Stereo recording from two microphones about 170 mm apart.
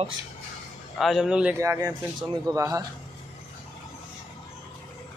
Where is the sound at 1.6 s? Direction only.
15° right (ahead or behind).